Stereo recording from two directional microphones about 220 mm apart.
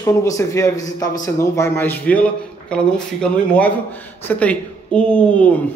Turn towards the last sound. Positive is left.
turn(degrees=5)  # may be behind; listen again after turning